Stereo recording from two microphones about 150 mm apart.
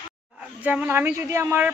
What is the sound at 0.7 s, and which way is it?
Speech, 10° right (ahead or behind).